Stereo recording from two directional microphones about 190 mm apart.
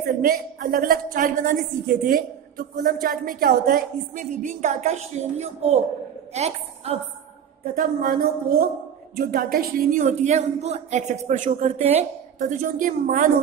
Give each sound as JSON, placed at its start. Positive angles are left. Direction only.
{"t": 0.2, "sound": "a woman's voice", "side_deg": -50}
{"t": 7.6, "sound": "a woman's voice", "side_deg": -45}